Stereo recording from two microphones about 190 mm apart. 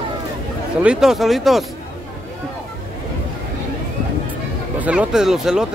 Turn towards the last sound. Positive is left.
turn(degrees=-5)  # may be behind; listen again after turning